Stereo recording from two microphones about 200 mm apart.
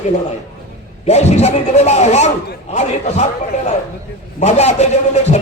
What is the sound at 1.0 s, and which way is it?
Speech, 35° left (ahead or behind).